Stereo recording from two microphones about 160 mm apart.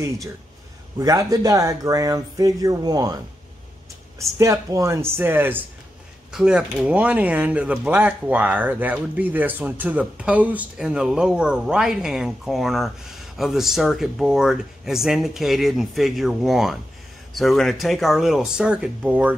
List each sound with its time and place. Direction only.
0.9 s speech: 20° right (ahead or behind)
4.2 s speech: 20° right (ahead or behind)